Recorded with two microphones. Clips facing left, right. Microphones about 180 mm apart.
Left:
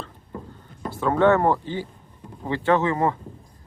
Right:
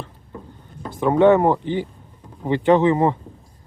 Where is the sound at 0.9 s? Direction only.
15° right (ahead or behind).